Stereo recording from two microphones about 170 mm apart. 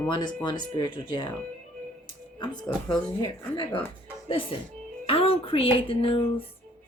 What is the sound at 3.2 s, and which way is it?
Speech, 30° left (ahead or behind).